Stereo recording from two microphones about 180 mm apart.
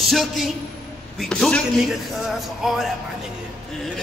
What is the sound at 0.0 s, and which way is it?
A woman's voice, centre (ahead or behind).